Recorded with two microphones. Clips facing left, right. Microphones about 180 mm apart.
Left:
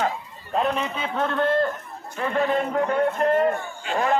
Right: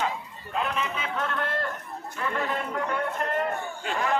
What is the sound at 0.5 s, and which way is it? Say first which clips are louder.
A man's voice: left 5 dB; 35° left (ahead or behind).